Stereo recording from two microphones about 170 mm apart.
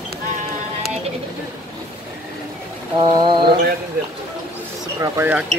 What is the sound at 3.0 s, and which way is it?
Mantra, 25° right (ahead or behind).